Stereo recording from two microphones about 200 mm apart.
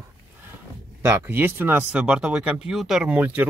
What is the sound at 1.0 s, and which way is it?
Speech, 10° right (ahead or behind).